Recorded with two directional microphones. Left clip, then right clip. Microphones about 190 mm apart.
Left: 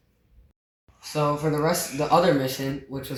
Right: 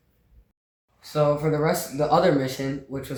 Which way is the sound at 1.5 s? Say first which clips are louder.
Right 1 dB; centre (ahead or behind).